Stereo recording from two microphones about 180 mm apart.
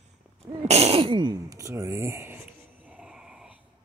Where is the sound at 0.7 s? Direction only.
35° right (ahead or behind); by 3.6 s 5° right (ahead or behind).